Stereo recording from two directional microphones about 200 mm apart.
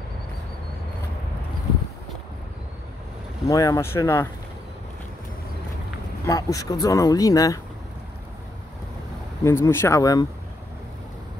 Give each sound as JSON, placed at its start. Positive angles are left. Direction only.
{"t": 3.4, "sound": "speech", "side_deg": 15}
{"t": 6.2, "sound": "speech", "side_deg": 15}
{"t": 9.4, "sound": "speech", "side_deg": 10}